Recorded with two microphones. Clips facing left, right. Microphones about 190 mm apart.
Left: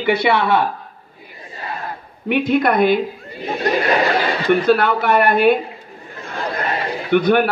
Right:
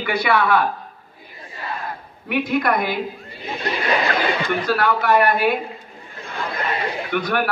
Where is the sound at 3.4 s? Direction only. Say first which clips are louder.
Left 7 dB; 40° left (ahead or behind).